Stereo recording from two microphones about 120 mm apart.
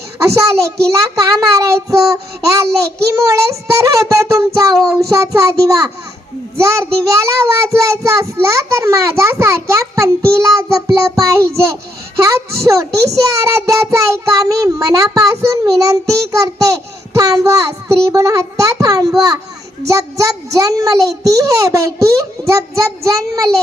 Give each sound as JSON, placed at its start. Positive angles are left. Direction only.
{"t": 0.2, "sound": "a child's voice", "side_deg": -25}